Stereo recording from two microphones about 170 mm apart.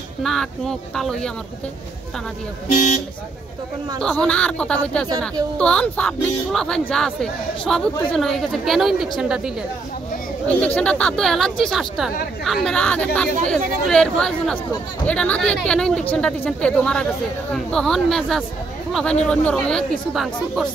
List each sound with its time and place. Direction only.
0.2 s speech: centre (ahead or behind)
2.7 s speech: 45° left (ahead or behind)
4.0 s speech: 5° left (ahead or behind)
10.5 s speech: 10° left (ahead or behind)